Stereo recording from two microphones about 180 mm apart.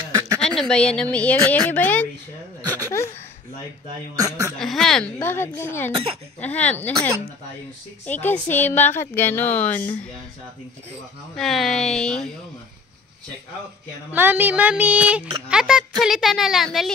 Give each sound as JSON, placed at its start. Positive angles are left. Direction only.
{"t": 0.4, "sound": "a woman's voice", "side_deg": 5}
{"t": 4.1, "sound": "speech", "side_deg": -15}
{"t": 4.6, "sound": "speech", "side_deg": 0}
{"t": 11.3, "sound": "speech", "side_deg": 0}
{"t": 14.1, "sound": "speech", "side_deg": -10}